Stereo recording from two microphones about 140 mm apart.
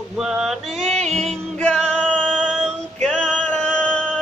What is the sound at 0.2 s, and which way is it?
Mantra, 5° right (ahead or behind).